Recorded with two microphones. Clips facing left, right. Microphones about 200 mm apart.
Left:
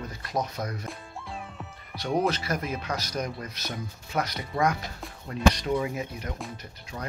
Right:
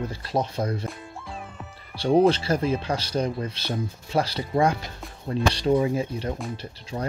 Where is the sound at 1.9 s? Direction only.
30° right (ahead or behind).